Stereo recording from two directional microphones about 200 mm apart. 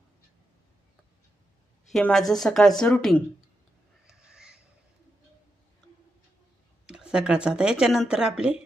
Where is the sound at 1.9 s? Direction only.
Centre (ahead or behind).